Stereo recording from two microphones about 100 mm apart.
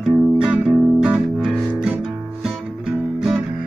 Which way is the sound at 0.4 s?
10° right (ahead or behind).